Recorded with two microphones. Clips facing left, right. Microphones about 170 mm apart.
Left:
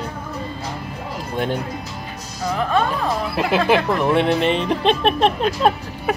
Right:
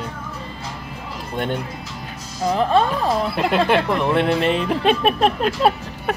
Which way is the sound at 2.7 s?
30° right (ahead or behind).